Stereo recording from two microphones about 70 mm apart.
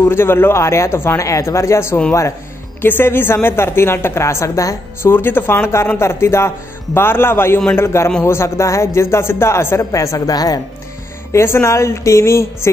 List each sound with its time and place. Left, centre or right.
0.1 s a man's voice: left
5.0 s a man's voice: left
9.8 s a woman's voice: left
11.3 s a woman's voice: left